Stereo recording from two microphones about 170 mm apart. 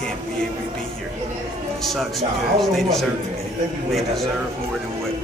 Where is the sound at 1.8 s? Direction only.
Centre (ahead or behind).